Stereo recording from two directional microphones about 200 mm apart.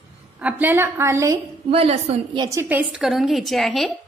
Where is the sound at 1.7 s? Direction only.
30° right (ahead or behind).